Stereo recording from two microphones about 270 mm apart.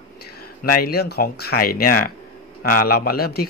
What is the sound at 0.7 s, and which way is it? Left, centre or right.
A man's voice, left.